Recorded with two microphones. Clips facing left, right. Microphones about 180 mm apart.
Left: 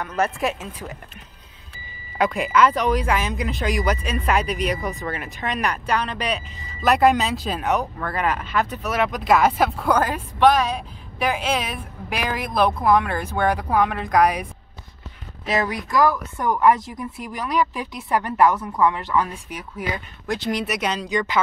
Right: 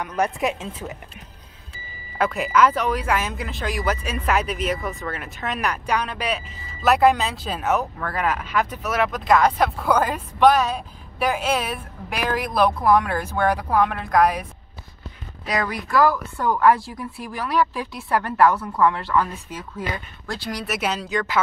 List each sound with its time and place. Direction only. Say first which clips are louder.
0.0 s a woman's voice: even; 15° right (ahead or behind)
2.1 s a woman's voice: left 1 dB; 5° right (ahead or behind)
10.4 s a woman's voice: even; 10° right (ahead or behind)
15.4 s a woman's voice: left 2 dB; 25° left (ahead or behind)
20.6 s speech: left 1 dB; 5° right (ahead or behind)